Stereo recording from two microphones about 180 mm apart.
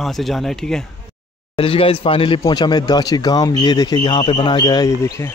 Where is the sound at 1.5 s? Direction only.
30° left (ahead or behind).